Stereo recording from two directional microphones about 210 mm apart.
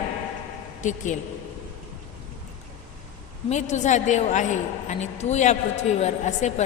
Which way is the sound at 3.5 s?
35° left (ahead or behind).